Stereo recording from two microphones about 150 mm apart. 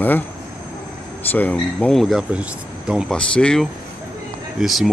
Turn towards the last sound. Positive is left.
turn(degrees=0)  # may be behind; listen again after turning